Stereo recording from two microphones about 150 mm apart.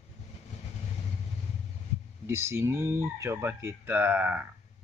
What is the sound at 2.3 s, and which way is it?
Speech, 15° right (ahead or behind).